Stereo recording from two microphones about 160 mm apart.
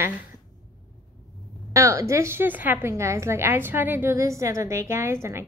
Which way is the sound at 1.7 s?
20° right (ahead or behind).